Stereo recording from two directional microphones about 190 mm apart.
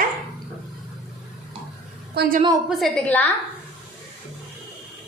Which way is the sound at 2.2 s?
55° right (ahead or behind).